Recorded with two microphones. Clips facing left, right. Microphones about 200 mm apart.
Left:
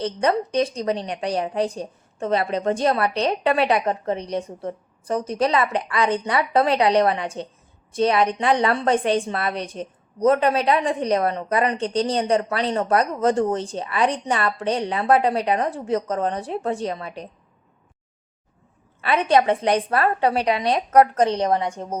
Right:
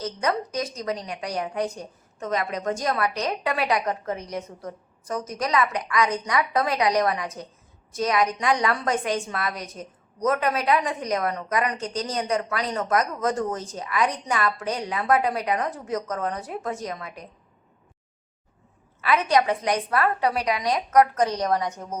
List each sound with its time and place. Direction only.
0.0 s a woman's voice: 30° left (ahead or behind)
19.0 s a woman's voice: 30° left (ahead or behind)